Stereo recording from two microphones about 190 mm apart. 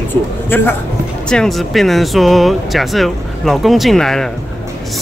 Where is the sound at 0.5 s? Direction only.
10° left (ahead or behind).